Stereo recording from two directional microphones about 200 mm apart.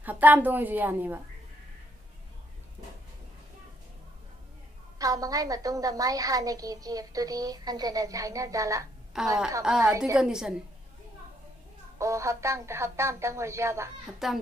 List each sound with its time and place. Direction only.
0.0 s a woman's voice: 10° right (ahead or behind)
4.9 s a woman's voice: 15° right (ahead or behind)
9.1 s a woman's voice: 5° right (ahead or behind)
9.8 s a woman's voice: 15° right (ahead or behind)
10.1 s a woman's voice: 5° right (ahead or behind)
12.0 s a woman's voice: 15° right (ahead or behind)
14.2 s a woman's voice: centre (ahead or behind)